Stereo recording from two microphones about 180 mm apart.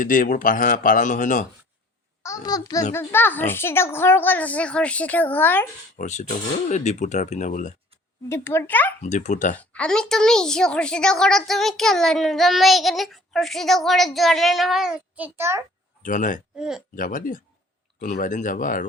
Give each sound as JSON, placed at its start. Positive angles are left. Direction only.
{"t": 0.0, "sound": "a man's voice", "side_deg": 50}
{"t": 2.2, "sound": "a child's voice", "side_deg": 20}
{"t": 6.0, "sound": "speech", "side_deg": 40}
{"t": 8.3, "sound": "speech", "side_deg": 15}
{"t": 9.0, "sound": "a man's voice", "side_deg": 45}
{"t": 9.6, "sound": "a woman's voice", "side_deg": 5}
{"t": 16.0, "sound": "a man's voice", "side_deg": 45}
{"t": 16.6, "sound": "a woman's voice", "side_deg": -5}
{"t": 16.9, "sound": "a man's voice", "side_deg": 50}